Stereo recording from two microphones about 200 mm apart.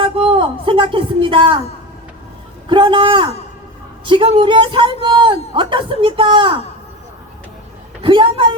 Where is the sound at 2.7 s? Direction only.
25° right (ahead or behind).